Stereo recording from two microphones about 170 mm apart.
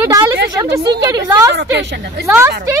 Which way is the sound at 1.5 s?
80° right.